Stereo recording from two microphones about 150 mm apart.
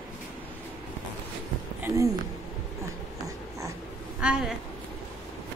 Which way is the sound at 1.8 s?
20° right (ahead or behind).